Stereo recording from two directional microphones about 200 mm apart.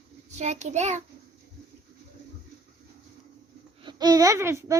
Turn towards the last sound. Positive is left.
turn(degrees=-15)  # may be behind; listen again after turning